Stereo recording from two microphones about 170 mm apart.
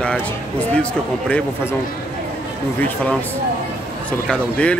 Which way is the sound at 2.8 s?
10° left (ahead or behind).